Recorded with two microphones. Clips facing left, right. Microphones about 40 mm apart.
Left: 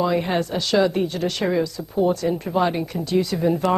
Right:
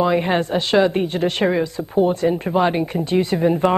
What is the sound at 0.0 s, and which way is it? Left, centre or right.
A woman's voice, right.